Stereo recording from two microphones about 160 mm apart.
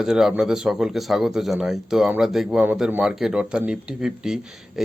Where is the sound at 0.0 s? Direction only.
Centre (ahead or behind).